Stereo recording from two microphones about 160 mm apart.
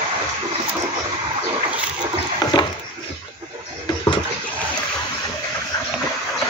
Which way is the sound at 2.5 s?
25° left (ahead or behind).